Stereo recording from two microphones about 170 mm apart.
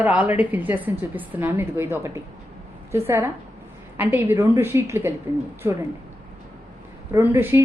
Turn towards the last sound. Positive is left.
turn(degrees=-15)  # may be behind; listen again after turning